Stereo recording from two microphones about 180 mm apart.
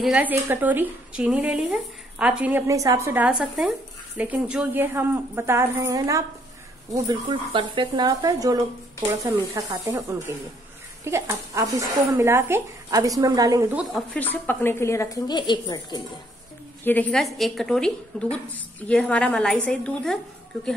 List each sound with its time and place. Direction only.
0.0 s a woman's voice: 5° right (ahead or behind)
13.9 s a woman's voice: 10° left (ahead or behind)
16.8 s a woman's voice: 10° left (ahead or behind)